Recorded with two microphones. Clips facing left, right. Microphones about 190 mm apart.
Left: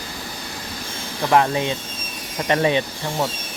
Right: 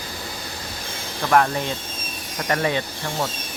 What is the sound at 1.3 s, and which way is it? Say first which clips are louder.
Speech: left 1 dB; 15° left (ahead or behind).